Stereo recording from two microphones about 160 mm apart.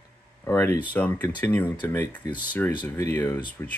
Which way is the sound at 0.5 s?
15° left (ahead or behind).